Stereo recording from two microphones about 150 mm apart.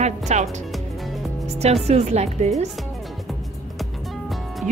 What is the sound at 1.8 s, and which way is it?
Speech, 45° right (ahead or behind).